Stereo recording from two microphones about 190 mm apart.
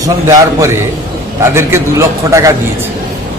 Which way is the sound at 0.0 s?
15° right (ahead or behind).